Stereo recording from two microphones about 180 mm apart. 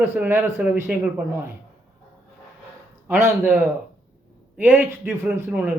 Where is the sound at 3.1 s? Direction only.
15° right (ahead or behind).